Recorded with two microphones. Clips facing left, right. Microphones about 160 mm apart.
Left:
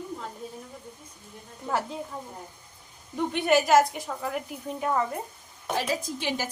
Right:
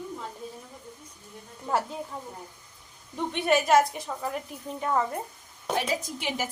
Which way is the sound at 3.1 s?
Centre (ahead or behind).